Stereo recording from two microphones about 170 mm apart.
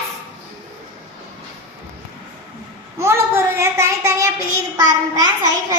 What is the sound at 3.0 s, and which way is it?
Child singing, 15° right (ahead or behind).